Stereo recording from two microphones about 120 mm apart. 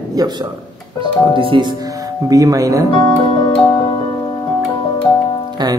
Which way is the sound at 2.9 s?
40° left (ahead or behind).